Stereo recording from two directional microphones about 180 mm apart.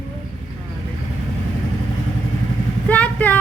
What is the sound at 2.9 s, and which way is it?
Speech, 10° left (ahead or behind).